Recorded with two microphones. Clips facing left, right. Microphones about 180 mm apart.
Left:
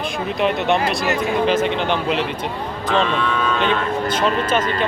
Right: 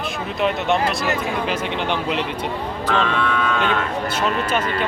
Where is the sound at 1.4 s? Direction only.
10° right (ahead or behind).